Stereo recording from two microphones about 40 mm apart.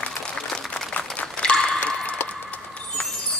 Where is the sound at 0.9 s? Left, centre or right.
Left.